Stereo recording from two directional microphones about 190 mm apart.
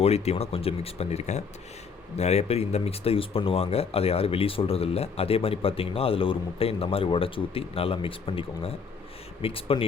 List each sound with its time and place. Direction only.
0.0 s speech: 30° left (ahead or behind)